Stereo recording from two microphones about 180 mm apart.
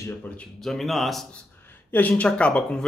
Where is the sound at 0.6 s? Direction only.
Centre (ahead or behind).